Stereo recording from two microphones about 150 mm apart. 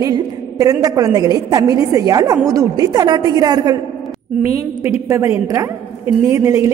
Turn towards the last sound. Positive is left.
turn(degrees=-20)  # may be behind; listen again after turning